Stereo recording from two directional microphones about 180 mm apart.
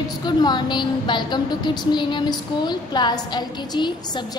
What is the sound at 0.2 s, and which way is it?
A woman's voice, 25° left (ahead or behind).